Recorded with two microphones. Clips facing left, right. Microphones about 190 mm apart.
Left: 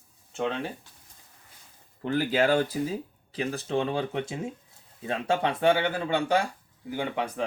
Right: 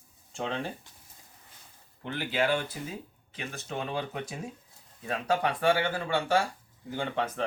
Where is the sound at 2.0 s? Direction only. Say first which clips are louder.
Left 5 dB; 40° left (ahead or behind); by 7.5 s 15° left (ahead or behind).